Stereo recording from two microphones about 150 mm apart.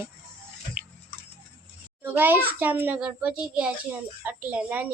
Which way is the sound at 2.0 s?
15° right (ahead or behind).